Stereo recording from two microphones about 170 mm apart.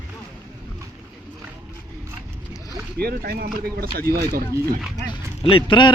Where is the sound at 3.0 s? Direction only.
65° right (ahead or behind).